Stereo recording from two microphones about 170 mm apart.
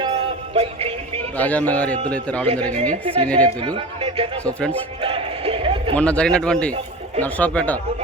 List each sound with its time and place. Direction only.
0.5 s music: 35° right (ahead or behind)
1.4 s a man's voice: 10° left (ahead or behind)
3.7 s speech: 30° right (ahead or behind)
4.4 s a man's voice: 5° left (ahead or behind)
5.0 s a sound: 35° right (ahead or behind)
6.0 s a man's voice: 5° left (ahead or behind)